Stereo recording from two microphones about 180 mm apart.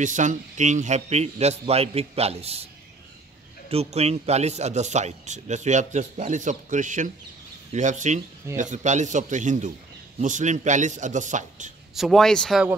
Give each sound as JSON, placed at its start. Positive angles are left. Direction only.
{"t": 0.0, "sound": "a man's voice", "side_deg": -45}
{"t": 11.9, "sound": "a man's voice", "side_deg": 0}